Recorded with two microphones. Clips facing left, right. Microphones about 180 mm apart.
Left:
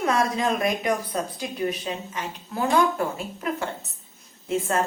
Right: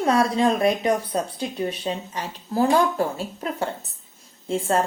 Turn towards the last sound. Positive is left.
turn(degrees=-30)  # may be behind; listen again after turning